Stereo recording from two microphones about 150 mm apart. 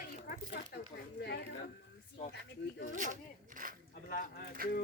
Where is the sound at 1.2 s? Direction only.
90° left.